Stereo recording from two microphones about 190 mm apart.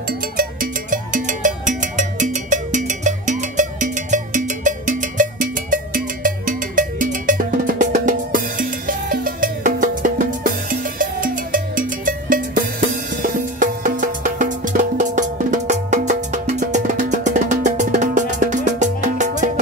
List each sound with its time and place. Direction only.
0.4 s music: 45° right (ahead or behind)